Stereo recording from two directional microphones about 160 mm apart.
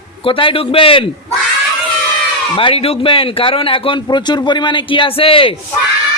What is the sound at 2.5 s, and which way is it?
Speech, 35° left (ahead or behind).